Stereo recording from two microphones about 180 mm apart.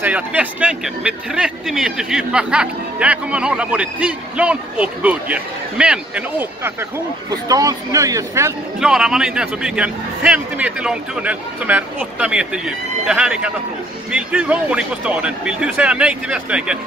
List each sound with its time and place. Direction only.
0.0 s speech: 10° right (ahead or behind)
7.2 s speech: 20° right (ahead or behind)
8.7 s speech: 5° right (ahead or behind)